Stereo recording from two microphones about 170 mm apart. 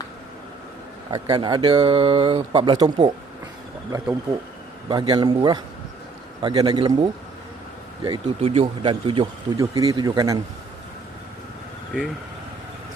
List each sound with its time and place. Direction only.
1.1 s speech: 25° right (ahead or behind)
4.9 s speech: 25° right (ahead or behind)
9.6 s speech: 20° right (ahead or behind)